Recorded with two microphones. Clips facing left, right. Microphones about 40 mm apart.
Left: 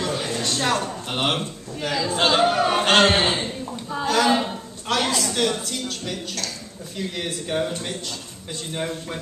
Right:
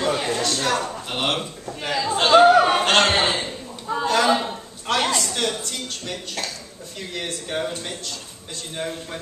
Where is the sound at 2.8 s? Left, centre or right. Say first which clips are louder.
Left 1 dB; centre.